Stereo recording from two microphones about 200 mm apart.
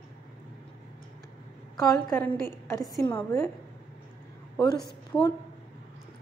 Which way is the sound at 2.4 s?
15° left (ahead or behind).